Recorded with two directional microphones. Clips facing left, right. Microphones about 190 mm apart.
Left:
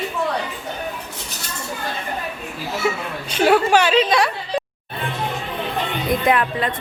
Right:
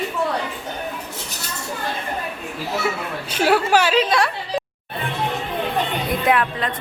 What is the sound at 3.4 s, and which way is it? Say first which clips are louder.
Speech: left 2 dB; 5° right (ahead or behind).